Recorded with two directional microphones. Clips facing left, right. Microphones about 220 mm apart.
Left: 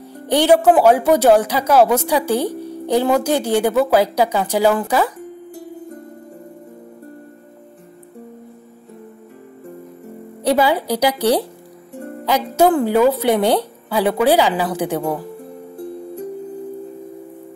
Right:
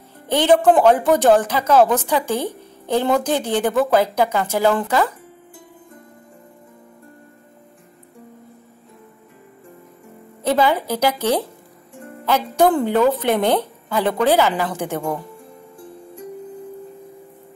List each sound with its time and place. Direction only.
0.3 s speech: 10° left (ahead or behind)
5.5 s music: 40° left (ahead or behind)
10.4 s speech: 10° left (ahead or behind)
11.9 s music: 40° left (ahead or behind)
12.3 s speech: 10° left (ahead or behind)
15.3 s music: 60° left (ahead or behind)